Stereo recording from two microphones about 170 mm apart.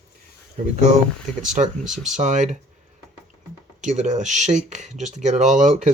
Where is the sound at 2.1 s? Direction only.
45° right (ahead or behind).